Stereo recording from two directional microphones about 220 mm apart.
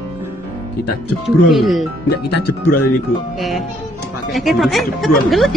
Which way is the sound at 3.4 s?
Centre (ahead or behind).